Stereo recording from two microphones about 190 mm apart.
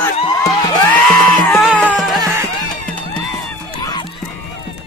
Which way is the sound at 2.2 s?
15° right (ahead or behind).